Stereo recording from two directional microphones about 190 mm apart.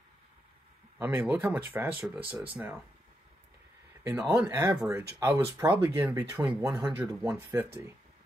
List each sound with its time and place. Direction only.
0.9 s speech: 10° right (ahead or behind)
4.0 s speech: 15° right (ahead or behind)
5.7 s speech: 20° right (ahead or behind)